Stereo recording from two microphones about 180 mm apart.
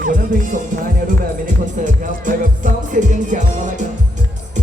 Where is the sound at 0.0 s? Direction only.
50° right (ahead or behind).